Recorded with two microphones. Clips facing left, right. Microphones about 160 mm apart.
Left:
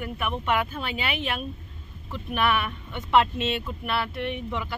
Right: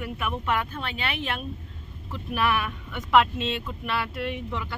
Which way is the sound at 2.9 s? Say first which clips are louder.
Right 1 dB; 30° left (ahead or behind).